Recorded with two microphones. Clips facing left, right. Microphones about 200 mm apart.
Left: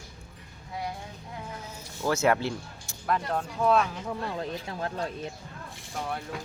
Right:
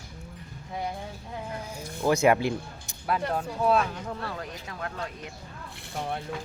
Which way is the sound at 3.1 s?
5° right (ahead or behind).